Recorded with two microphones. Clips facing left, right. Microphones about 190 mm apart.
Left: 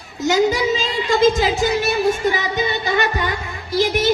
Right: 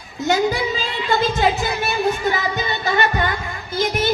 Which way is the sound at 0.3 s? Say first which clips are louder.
Left 6 dB; 80° left.